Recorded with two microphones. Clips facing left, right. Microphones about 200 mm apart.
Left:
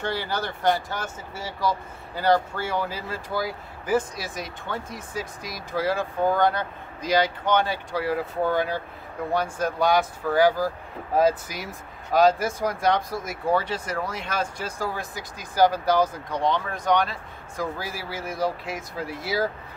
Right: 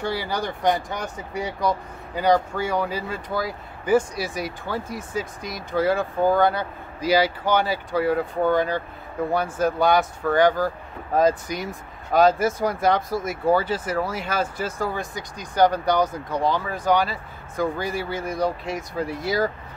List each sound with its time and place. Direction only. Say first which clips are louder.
0.0 s speech: right 2 dB; 10° right (ahead or behind)
2.3 s speech: right 2 dB; 5° left (ahead or behind)